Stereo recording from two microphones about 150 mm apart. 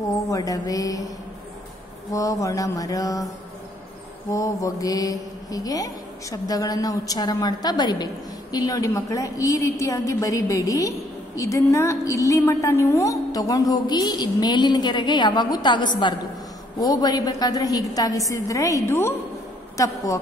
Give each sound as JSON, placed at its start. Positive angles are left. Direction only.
{"t": 0.3, "sound": "a woman's voice", "side_deg": 25}
{"t": 2.1, "sound": "a woman's voice", "side_deg": 20}
{"t": 4.3, "sound": "a woman's voice", "side_deg": 20}